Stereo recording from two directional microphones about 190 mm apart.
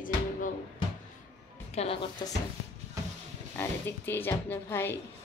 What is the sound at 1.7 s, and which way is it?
Speech, 30° left (ahead or behind).